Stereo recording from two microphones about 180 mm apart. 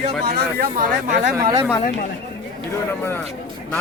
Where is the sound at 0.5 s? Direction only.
50° right (ahead or behind).